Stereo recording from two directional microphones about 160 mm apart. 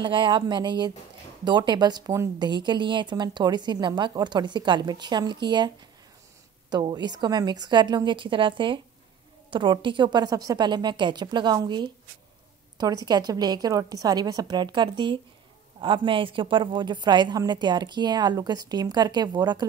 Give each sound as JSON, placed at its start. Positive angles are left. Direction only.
{"t": 0.0, "sound": "speech", "side_deg": -30}
{"t": 6.7, "sound": "speech", "side_deg": -25}